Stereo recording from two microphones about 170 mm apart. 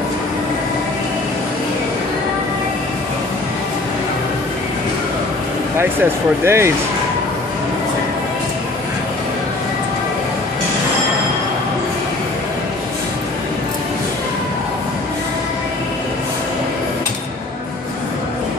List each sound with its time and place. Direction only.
6.4 s speech: 15° right (ahead or behind)